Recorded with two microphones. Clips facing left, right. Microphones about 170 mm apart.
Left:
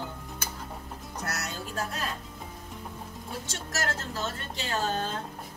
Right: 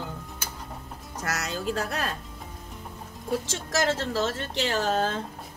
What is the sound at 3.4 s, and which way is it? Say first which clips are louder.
Speech: right 5 dB; 90° right.